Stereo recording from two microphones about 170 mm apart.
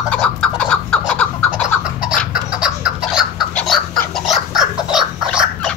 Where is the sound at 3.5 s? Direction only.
Centre (ahead or behind).